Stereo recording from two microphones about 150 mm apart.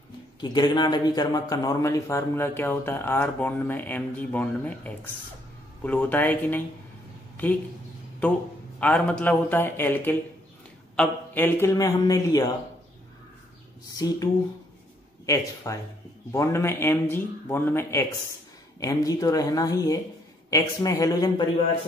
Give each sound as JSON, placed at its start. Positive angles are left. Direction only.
{"t": 0.4, "sound": "speech", "side_deg": 30}
{"t": 8.7, "sound": "a man's voice", "side_deg": 10}
{"t": 13.9, "sound": "a man's voice", "side_deg": 25}